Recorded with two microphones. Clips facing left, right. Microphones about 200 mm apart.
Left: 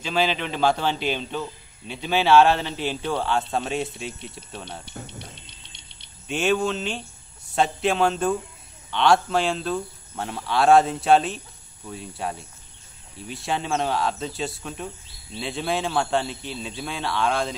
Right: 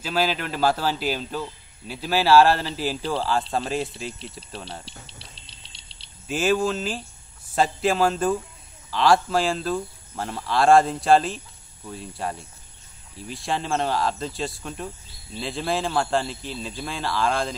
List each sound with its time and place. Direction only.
0.0 s a man's voice: 5° right (ahead or behind)
5.5 s a sound: 30° right (ahead or behind)
6.2 s a man's voice: centre (ahead or behind)